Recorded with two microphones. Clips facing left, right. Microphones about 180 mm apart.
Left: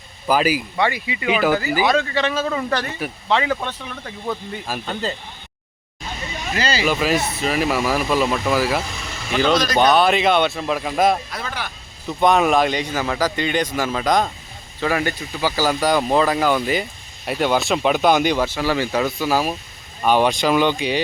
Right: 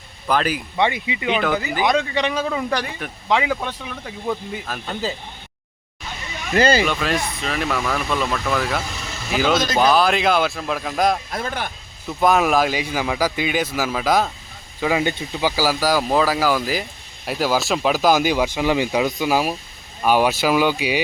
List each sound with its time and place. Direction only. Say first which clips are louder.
0.3 s speech: left 3 dB; 5° left (ahead or behind)
0.8 s speech: right 1 dB; 20° right (ahead or behind)
1.3 s a man's voice: left 3 dB; 5° left (ahead or behind)
1.9 s a man's voice: left 1 dB; 15° right (ahead or behind)
6.5 s speech: right 7 dB; 50° right (ahead or behind)
6.8 s a man's voice: left 3 dB; 5° left (ahead or behind)
9.3 s a man's voice: left 1 dB; 5° right (ahead or behind)
11.3 s speech: right 3 dB; 50° right (ahead or behind)
12.0 s a man's voice: left 1 dB; centre (ahead or behind)
14.8 s a man's voice: right 1 dB; 15° right (ahead or behind)